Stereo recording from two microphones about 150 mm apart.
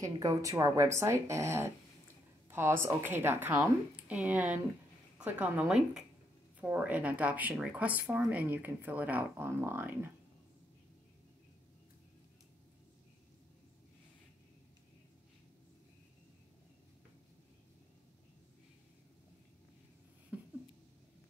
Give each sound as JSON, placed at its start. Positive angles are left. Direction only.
{"t": 0.0, "sound": "speech", "side_deg": -20}